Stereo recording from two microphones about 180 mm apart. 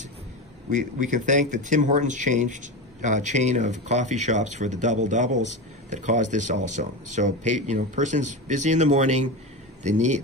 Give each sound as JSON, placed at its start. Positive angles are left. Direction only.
{"t": 0.7, "sound": "speech", "side_deg": -45}